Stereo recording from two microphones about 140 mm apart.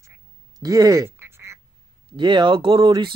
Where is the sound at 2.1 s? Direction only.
35° right (ahead or behind).